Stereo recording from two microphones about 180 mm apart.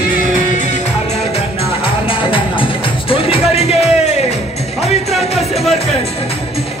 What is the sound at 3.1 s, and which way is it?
Music, 35° left (ahead or behind).